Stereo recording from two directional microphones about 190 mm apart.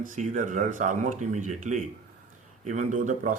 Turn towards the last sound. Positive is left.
turn(degrees=-45)  # may be behind; listen again after turning